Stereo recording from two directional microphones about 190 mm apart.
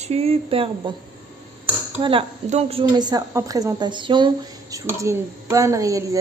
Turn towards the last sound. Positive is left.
turn(degrees=-15)  # may be behind; listen again after turning